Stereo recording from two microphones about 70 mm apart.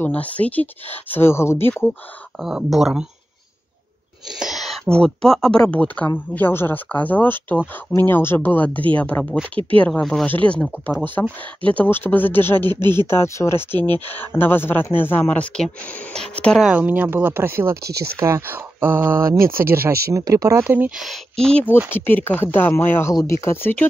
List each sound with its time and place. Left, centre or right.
0.0 s speech: left
2.4 s speech: centre
4.3 s a sound: centre
4.8 s speech: centre
5.7 s speech: centre
6.3 s speech: left; by 16.5 s centre
16.7 s speech: right
20.2 s speech: right
20.6 s speech: right
21.0 s speech: centre
21.9 s speech: left